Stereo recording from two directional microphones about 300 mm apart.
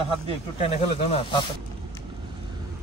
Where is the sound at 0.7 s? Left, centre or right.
Centre.